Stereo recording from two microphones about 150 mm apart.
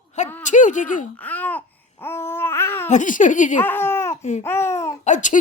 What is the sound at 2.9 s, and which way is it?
Speech, 60° left (ahead or behind).